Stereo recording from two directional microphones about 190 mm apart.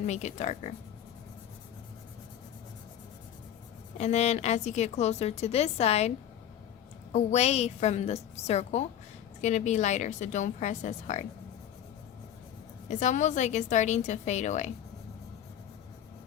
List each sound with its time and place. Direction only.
0.0 s a woman's voice: 35° left (ahead or behind)
3.9 s a woman's voice: 35° left (ahead or behind)
12.9 s a woman's voice: 40° left (ahead or behind)